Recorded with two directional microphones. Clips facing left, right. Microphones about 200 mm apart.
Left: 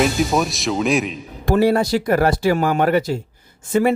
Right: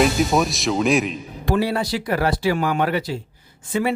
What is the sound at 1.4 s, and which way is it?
Speech, 45° left (ahead or behind).